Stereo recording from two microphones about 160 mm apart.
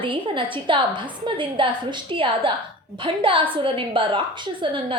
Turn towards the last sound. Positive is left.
turn(degrees=-30)  # may be behind; listen again after turning